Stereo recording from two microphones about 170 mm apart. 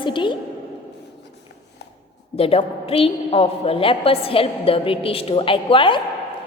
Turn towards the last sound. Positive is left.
turn(degrees=30)  # may be behind; listen again after turning